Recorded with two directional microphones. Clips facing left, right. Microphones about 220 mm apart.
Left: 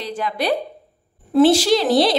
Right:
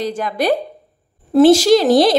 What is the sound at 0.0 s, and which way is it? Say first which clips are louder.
A woman's voice: right 4 dB; 45° right (ahead or behind).